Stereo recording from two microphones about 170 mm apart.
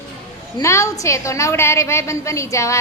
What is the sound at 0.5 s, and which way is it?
A woman's voice, 15° left (ahead or behind).